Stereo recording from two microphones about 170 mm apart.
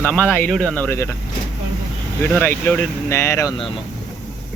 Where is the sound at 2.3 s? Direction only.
10° left (ahead or behind).